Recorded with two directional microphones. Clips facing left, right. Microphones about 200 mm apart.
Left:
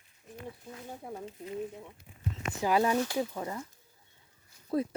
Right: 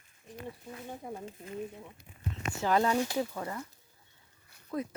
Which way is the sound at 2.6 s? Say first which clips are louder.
Left 1 dB; 10° left (ahead or behind).